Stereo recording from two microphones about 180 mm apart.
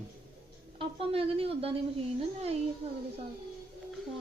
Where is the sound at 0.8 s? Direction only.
30° right (ahead or behind).